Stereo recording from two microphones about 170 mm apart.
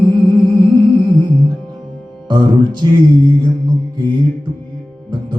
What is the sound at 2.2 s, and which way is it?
Music, 25° right (ahead or behind).